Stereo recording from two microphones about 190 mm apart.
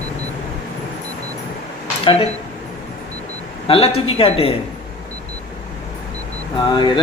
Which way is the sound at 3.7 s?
30° left (ahead or behind).